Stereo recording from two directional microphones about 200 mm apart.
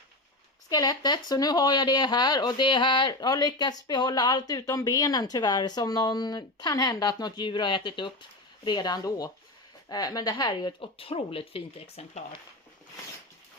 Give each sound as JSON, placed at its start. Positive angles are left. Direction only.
{"t": 0.7, "sound": "speech", "side_deg": 20}